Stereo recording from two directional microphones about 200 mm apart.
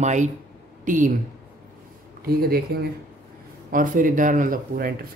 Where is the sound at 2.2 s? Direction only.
50° right (ahead or behind).